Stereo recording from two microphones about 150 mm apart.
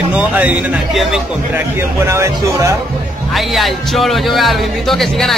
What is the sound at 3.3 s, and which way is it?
Speech, centre (ahead or behind).